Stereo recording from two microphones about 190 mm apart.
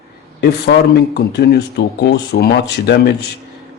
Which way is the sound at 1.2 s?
60° left (ahead or behind).